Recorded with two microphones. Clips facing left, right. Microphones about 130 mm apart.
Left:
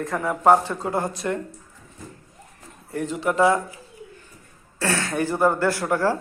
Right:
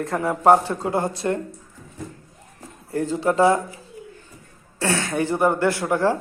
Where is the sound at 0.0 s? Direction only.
30° right (ahead or behind).